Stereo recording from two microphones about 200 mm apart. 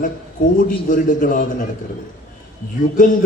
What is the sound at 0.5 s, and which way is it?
A man's voice, 40° left (ahead or behind).